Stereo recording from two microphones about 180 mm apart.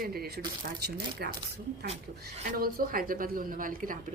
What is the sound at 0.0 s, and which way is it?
A woman's voice, 60° right (ahead or behind).